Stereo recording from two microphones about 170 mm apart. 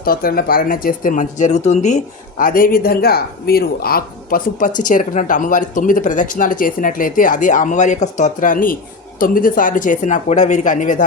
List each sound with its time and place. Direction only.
0.0 s speech: 60° left (ahead or behind); by 2.0 s 45° left (ahead or behind)
2.4 s speech: 55° left (ahead or behind)